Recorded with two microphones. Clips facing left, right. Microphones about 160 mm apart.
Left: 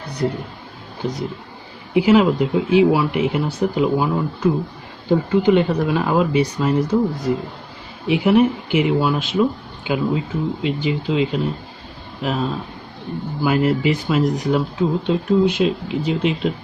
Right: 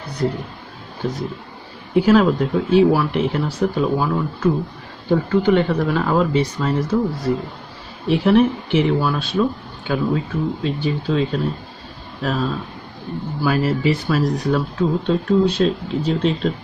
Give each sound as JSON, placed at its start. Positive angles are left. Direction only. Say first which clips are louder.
{"t": 2.0, "sound": "speech", "louder": "even", "side_deg": 10}